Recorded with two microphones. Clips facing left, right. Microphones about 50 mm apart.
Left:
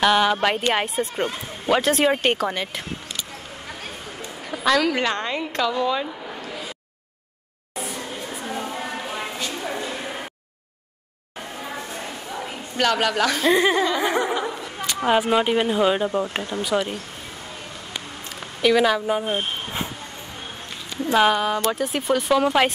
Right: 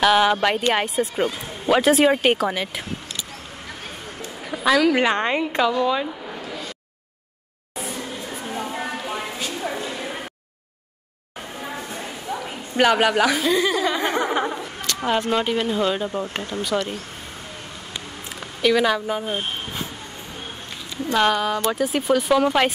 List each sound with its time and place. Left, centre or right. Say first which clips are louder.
0.0 s speech: right 1 dB; centre
4.5 s a woman's voice: right 2 dB; centre
5.0 s a woman's voice: right 4 dB; right
5.7 s speech: right 2 dB; centre
7.7 s a sound: even; centre
9.9 s a sound: right 1 dB; centre
11.7 s a sound: even; centre
12.4 s a woman's voice: right 4 dB; centre
13.5 s speech: left 2 dB; left
13.9 s speech: left 1 dB; centre
14.3 s laughter: right 2 dB; right
14.9 s speech: left 2 dB; centre
18.6 s speech: left 1 dB; centre
21.1 s speech: left 1 dB; centre